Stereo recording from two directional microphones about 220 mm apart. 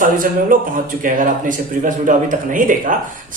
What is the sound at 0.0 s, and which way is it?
Speech, 40° right (ahead or behind).